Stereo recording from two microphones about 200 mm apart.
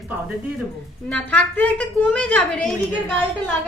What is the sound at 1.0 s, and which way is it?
A woman's voice, 5° left (ahead or behind).